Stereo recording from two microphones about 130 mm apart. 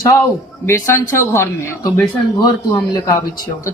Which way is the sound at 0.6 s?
20° left (ahead or behind).